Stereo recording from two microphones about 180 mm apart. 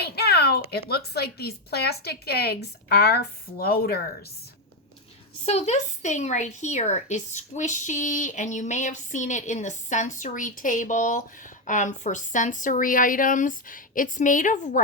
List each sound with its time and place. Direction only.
0.0 s speech: 60° left (ahead or behind)
5.5 s speech: 35° left (ahead or behind)